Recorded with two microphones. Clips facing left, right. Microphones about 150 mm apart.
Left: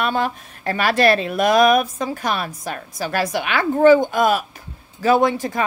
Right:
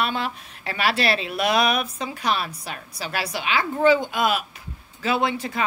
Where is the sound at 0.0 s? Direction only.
45° left (ahead or behind).